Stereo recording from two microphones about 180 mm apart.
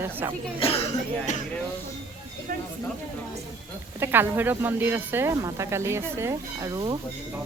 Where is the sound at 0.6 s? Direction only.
30° left (ahead or behind).